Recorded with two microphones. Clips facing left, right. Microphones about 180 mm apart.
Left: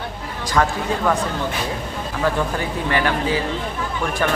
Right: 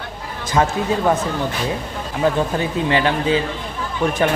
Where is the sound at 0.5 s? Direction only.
20° right (ahead or behind).